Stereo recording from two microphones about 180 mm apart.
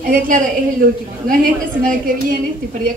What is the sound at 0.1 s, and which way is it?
Speech, 50° right (ahead or behind).